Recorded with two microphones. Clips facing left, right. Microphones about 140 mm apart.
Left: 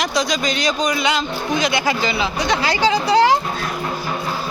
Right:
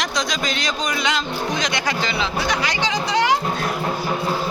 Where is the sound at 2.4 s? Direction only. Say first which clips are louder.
Left 7 dB; 30° left (ahead or behind).